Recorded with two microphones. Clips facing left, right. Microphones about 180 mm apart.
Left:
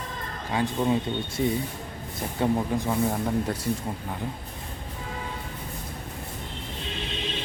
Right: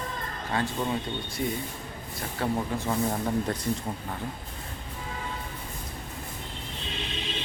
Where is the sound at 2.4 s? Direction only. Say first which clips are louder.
Left 4 dB; 15° left (ahead or behind).